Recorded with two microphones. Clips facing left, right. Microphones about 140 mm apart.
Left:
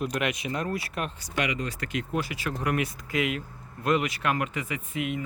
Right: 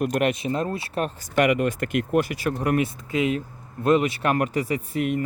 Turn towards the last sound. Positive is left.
turn(degrees=-40)  # may be behind; listen again after turning